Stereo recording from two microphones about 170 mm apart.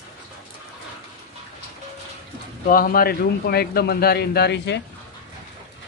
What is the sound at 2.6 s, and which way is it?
Speech, 55° left (ahead or behind).